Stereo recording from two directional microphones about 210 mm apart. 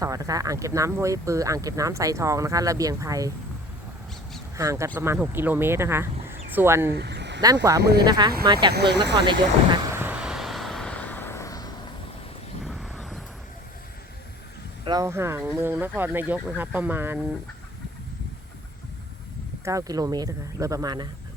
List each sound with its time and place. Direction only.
0.0 s speech: 15° right (ahead or behind)
4.5 s speech: 15° right (ahead or behind)
6.9 s a sound: 55° right (ahead or behind)
7.4 s speech: 15° right (ahead or behind)
7.8 s speech: 50° right (ahead or behind)
8.0 s speech: 20° right (ahead or behind)
8.7 s speech: 55° right (ahead or behind)
9.7 s vehicle: 15° right (ahead or behind); by 11.7 s 15° left (ahead or behind)
12.6 s a sound: centre (ahead or behind)
14.8 s speech: 15° right (ahead or behind)
19.6 s speech: 15° right (ahead or behind)